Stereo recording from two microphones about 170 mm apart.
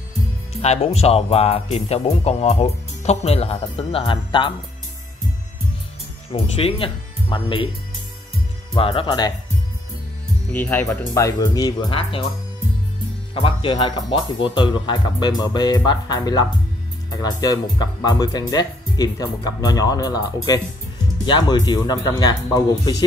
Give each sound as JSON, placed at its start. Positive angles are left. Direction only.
{"t": 0.6, "sound": "speech", "side_deg": 40}
{"t": 6.3, "sound": "speech", "side_deg": 35}
{"t": 8.7, "sound": "speech", "side_deg": 30}
{"t": 10.5, "sound": "speech", "side_deg": 10}
{"t": 13.3, "sound": "speech", "side_deg": 30}